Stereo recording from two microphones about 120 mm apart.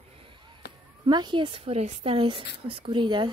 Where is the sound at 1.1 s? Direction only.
40° right (ahead or behind).